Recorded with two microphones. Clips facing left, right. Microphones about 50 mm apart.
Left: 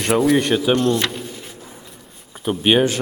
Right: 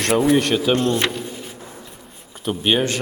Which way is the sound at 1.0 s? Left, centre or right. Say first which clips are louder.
Right 2 dB; centre.